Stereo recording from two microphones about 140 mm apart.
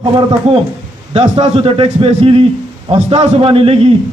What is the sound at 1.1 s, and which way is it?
A man's voice, 40° right (ahead or behind).